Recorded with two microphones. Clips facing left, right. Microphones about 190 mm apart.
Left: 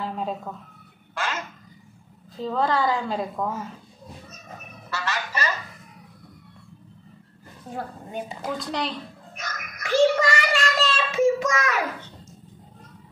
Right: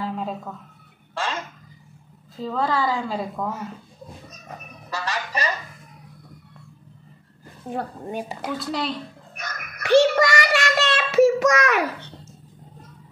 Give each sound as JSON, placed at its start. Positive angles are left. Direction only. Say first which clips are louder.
{"t": 1.1, "sound": "speech", "louder": "right 2 dB", "side_deg": -30}
{"t": 2.3, "sound": "a woman's voice", "louder": "even", "side_deg": 0}
{"t": 4.9, "sound": "speech", "louder": "right 1 dB", "side_deg": -35}
{"t": 7.7, "sound": "speech", "louder": "right 4 dB", "side_deg": -70}
{"t": 8.5, "sound": "a woman's voice", "louder": "right 1 dB", "side_deg": 0}
{"t": 9.3, "sound": "child singing", "louder": "left 2 dB", "side_deg": -60}